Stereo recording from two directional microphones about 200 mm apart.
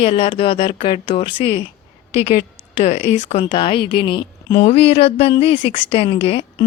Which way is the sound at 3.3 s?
25° left (ahead or behind).